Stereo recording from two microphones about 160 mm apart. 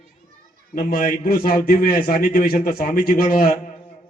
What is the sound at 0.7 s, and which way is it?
A man's voice, 65° left (ahead or behind).